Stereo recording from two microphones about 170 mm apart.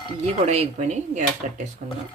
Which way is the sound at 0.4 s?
40° right (ahead or behind).